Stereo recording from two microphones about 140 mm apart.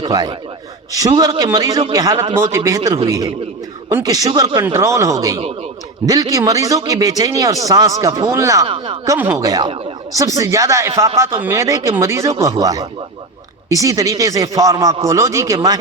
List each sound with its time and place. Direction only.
0.0 s speech: 30° right (ahead or behind)
8.6 s speech: 40° right (ahead or behind)
9.1 s speech: 15° right (ahead or behind)
9.5 s speech: 30° right (ahead or behind)